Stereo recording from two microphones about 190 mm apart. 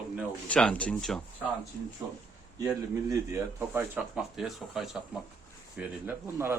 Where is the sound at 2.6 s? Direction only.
15° right (ahead or behind).